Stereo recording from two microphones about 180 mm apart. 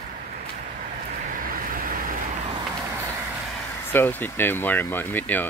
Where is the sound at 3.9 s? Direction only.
10° left (ahead or behind).